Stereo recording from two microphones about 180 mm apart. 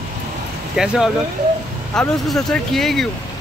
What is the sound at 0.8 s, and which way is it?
Speech, centre (ahead or behind).